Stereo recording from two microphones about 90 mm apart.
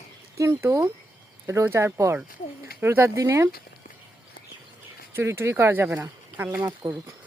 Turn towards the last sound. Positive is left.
turn(degrees=-20)  # may be behind; listen again after turning